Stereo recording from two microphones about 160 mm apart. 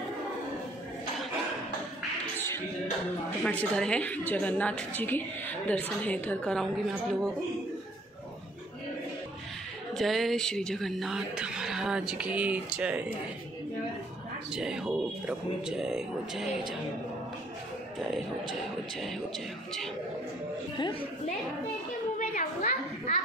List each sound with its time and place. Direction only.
2.3 s music: 15° left (ahead or behind)
3.4 s a woman's voice: 5° left (ahead or behind)
9.9 s speech: centre (ahead or behind)
14.5 s speech: 5° right (ahead or behind)
17.9 s speech: centre (ahead or behind)
20.7 s a woman's voice: 30° left (ahead or behind)
22.3 s a sound: 55° left (ahead or behind)